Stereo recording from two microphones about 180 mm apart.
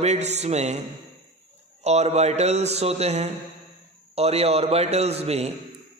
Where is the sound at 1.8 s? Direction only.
35° right (ahead or behind).